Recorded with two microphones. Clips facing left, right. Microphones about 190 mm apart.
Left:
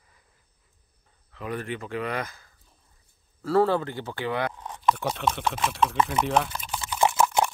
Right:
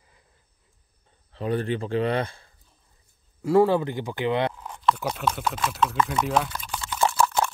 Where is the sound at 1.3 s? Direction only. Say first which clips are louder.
Right 6 dB; 30° right (ahead or behind).